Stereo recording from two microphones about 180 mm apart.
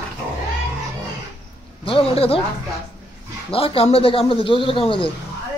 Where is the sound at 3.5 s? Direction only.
30° left (ahead or behind).